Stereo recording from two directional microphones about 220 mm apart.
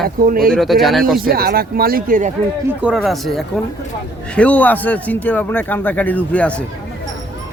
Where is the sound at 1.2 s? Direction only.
45° right (ahead or behind).